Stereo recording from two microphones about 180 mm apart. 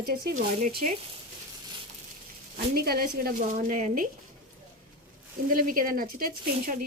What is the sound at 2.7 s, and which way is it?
Speech, 55° right (ahead or behind).